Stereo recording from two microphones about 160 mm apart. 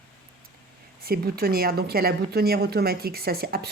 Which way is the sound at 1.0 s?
75° right (ahead or behind).